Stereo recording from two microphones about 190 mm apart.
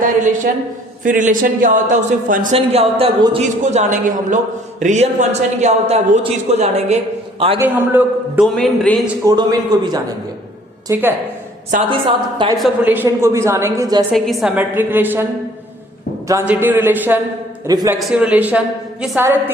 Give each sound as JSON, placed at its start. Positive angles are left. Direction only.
{"t": 0.0, "sound": "a sound", "side_deg": -45}
{"t": 1.0, "sound": "a man's voice", "side_deg": -45}
{"t": 2.6, "sound": "a man's voice", "side_deg": -30}
{"t": 7.6, "sound": "a woman's voice", "side_deg": -10}
{"t": 8.5, "sound": "speech", "side_deg": 5}
{"t": 9.2, "sound": "a man's voice", "side_deg": -20}
{"t": 10.8, "sound": "a woman's voice", "side_deg": -10}
{"t": 11.7, "sound": "a man's voice", "side_deg": -45}
{"t": 12.5, "sound": "a woman's voice", "side_deg": -5}
{"t": 14.1, "sound": "a woman's voice", "side_deg": 0}
{"t": 16.3, "sound": "a woman's voice", "side_deg": -10}
{"t": 18.0, "sound": "a woman's voice", "side_deg": -5}